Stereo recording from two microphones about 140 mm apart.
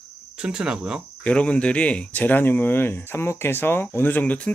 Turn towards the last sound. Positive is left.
turn(degrees=10)  # may be behind; listen again after turning